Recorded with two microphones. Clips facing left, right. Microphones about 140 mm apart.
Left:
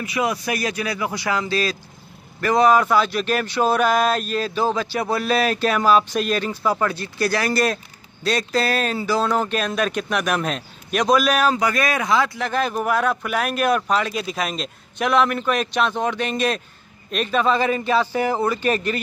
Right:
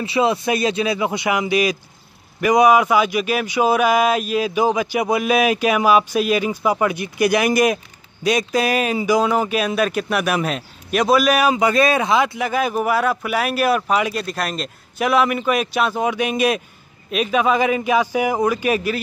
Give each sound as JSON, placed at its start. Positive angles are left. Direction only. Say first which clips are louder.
{"t": 0.0, "sound": "speech", "louder": "right 5 dB", "side_deg": -30}
{"t": 11.6, "sound": "speech", "louder": "right 5 dB", "side_deg": -25}
{"t": 12.4, "sound": "speech", "louder": "right 2 dB", "side_deg": -10}